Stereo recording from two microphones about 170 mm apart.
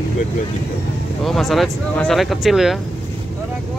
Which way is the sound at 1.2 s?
Centre (ahead or behind).